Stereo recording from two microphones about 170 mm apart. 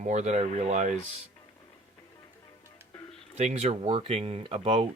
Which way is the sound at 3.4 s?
40° right (ahead or behind).